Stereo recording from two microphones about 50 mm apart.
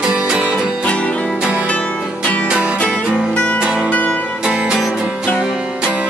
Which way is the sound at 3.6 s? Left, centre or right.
Centre.